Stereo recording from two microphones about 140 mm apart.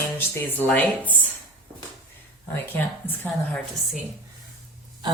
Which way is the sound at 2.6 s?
15° left (ahead or behind).